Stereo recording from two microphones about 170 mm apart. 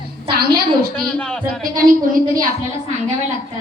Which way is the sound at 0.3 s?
65° right (ahead or behind).